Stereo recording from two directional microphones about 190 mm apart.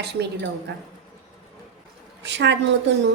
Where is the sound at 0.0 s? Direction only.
60° right (ahead or behind).